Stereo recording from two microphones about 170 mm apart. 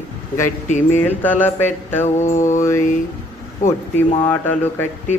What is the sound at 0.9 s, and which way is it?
Speech, 10° left (ahead or behind).